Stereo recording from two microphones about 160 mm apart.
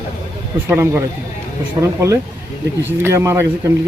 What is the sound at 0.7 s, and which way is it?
Speech, 15° right (ahead or behind).